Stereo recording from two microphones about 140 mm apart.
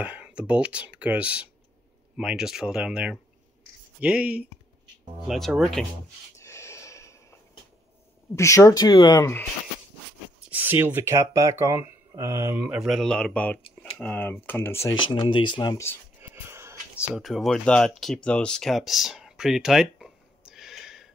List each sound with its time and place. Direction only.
0.0 s speech: 10° right (ahead or behind)
6.3 s snort: 20° left (ahead or behind)
8.4 s speech: 20° left (ahead or behind)
9.2 s speech: 15° left (ahead or behind)
10.5 s speech: 15° right (ahead or behind)
12.5 s speech: 10° right (ahead or behind); by 15.0 s 20° left (ahead or behind)
15.0 s speech: 35° left (ahead or behind)
16.2 s a sound: 15° right (ahead or behind)
17.0 s speech: centre (ahead or behind)